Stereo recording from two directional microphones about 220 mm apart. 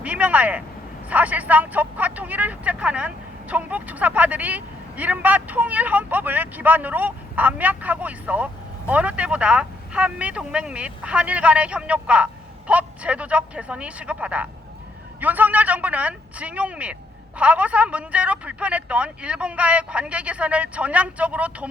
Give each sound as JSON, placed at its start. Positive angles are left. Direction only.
{"t": 0.0, "sound": "speech", "side_deg": -5}